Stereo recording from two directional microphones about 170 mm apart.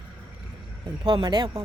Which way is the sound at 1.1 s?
25° right (ahead or behind).